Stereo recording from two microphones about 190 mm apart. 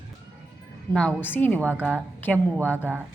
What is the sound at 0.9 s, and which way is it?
A woman's voice, 10° left (ahead or behind).